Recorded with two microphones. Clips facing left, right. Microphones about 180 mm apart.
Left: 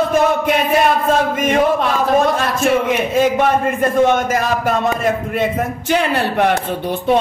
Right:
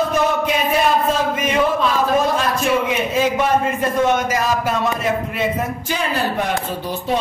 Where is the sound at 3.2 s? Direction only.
55° left (ahead or behind).